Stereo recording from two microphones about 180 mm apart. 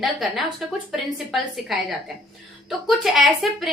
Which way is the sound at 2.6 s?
Centre (ahead or behind).